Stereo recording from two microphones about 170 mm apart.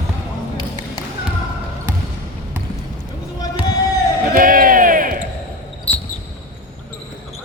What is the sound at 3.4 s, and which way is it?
Run, 20° left (ahead or behind).